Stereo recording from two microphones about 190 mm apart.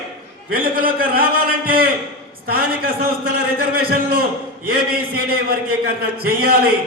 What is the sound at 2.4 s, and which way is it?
A man's voice, 50° right (ahead or behind).